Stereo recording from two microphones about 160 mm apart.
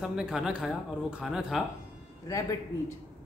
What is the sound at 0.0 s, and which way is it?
A man's voice, 5° right (ahead or behind).